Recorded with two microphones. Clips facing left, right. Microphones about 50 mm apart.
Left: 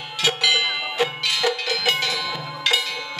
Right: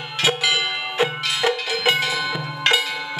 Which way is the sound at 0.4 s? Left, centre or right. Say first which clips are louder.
Left 1 dB; centre.